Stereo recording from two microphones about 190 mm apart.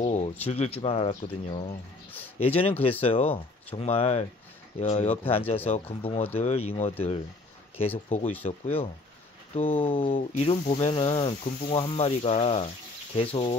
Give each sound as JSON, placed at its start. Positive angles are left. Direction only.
{"t": 0.0, "sound": "a sound", "side_deg": 35}
{"t": 0.5, "sound": "speech", "side_deg": 30}
{"t": 2.0, "sound": "speech", "side_deg": 10}
{"t": 2.4, "sound": "speech", "side_deg": 30}
{"t": 8.5, "sound": "speech", "side_deg": 35}